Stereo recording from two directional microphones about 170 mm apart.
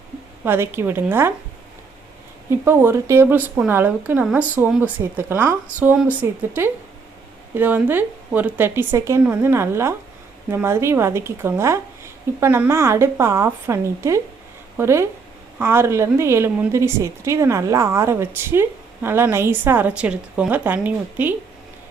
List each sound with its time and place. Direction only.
0.4 s speech: 15° right (ahead or behind)
2.5 s speech: 15° right (ahead or behind)